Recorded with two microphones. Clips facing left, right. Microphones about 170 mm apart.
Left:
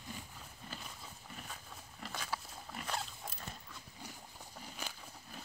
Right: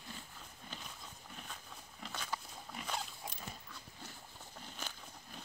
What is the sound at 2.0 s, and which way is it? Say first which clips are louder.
Dog: left 1 dB; centre (ahead or behind).